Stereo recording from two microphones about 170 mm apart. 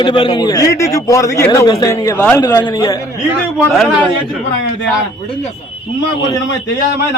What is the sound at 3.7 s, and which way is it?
Speech, centre (ahead or behind).